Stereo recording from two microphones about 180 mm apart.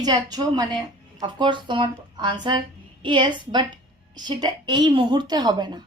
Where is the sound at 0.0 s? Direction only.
20° right (ahead or behind).